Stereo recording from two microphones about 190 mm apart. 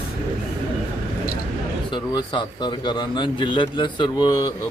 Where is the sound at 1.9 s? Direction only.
25° left (ahead or behind).